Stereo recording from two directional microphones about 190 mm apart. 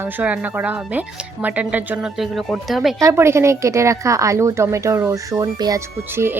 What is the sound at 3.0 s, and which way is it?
Speech, 15° right (ahead or behind).